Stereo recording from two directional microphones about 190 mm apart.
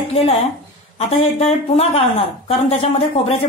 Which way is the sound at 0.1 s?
30° left (ahead or behind).